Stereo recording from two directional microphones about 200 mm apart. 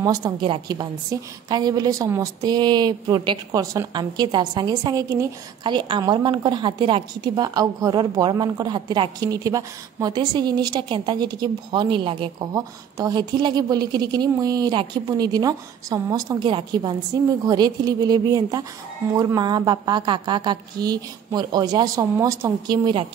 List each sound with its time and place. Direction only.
0.0 s a woman's voice: 20° right (ahead or behind)